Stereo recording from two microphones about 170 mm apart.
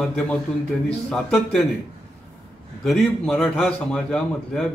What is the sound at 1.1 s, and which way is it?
Speech, 5° left (ahead or behind).